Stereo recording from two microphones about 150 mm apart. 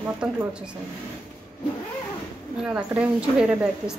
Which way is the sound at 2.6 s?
10° right (ahead or behind).